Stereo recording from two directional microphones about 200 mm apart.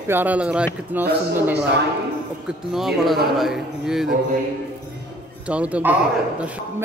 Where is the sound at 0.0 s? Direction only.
10° right (ahead or behind).